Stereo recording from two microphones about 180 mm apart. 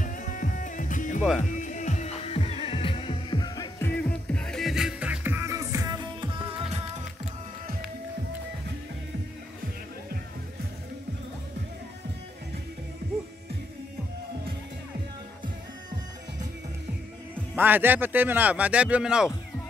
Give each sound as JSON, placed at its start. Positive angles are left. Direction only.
{"t": 0.0, "sound": "music", "side_deg": 45}
{"t": 3.8, "sound": "music", "side_deg": 10}
{"t": 17.6, "sound": "a man's voice", "side_deg": -10}